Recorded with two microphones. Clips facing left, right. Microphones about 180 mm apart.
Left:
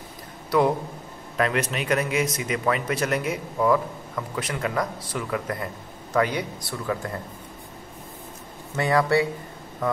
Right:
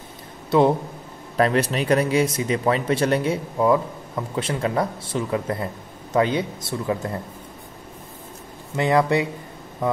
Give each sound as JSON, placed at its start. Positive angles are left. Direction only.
{"t": 0.5, "sound": "speech", "side_deg": -25}
{"t": 8.7, "sound": "speech", "side_deg": -20}